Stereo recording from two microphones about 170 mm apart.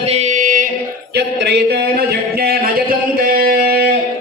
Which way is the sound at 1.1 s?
80° right.